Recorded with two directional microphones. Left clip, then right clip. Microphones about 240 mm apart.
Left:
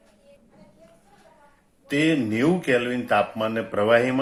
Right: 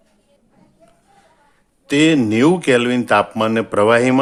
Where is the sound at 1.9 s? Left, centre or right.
Right.